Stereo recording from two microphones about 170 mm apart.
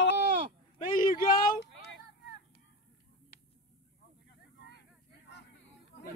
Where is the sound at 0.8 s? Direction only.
55° left (ahead or behind).